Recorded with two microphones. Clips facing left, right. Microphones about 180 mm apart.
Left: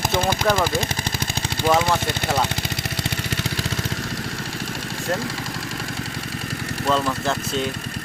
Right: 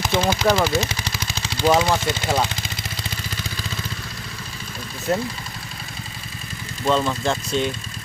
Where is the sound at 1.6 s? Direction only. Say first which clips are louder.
Right 2 dB; 55° left (ahead or behind).